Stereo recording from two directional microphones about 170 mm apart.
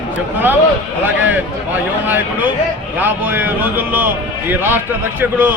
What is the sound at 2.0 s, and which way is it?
Speech, 10° right (ahead or behind).